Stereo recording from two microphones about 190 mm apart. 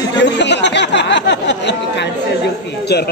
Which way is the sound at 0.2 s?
65° left (ahead or behind).